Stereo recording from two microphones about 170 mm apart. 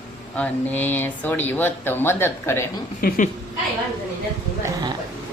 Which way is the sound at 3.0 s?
60° left (ahead or behind).